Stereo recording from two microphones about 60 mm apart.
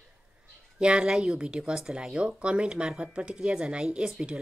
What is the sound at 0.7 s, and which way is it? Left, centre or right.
Speech, centre.